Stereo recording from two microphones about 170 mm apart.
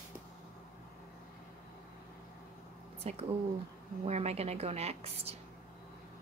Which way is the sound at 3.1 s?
40° right (ahead or behind).